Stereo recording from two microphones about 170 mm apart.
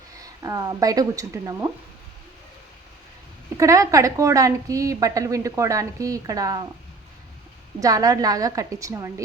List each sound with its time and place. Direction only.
0.2 s speech: 20° right (ahead or behind)
3.6 s a woman's voice: 20° right (ahead or behind)
7.8 s a woman's voice: 20° right (ahead or behind)